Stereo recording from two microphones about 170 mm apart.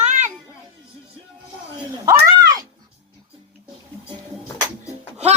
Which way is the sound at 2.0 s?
20° right (ahead or behind).